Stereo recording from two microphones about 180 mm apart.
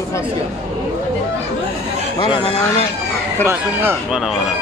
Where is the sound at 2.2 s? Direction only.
30° left (ahead or behind).